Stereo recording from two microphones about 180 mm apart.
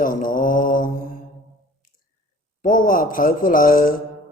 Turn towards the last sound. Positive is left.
turn(degrees=50)  # may be behind; listen again after turning